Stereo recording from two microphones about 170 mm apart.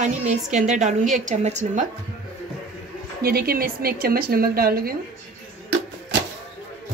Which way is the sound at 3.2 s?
60° right (ahead or behind).